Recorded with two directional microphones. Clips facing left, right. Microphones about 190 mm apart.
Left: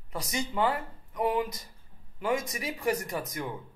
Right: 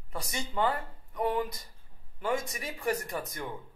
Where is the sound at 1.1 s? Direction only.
20° left (ahead or behind).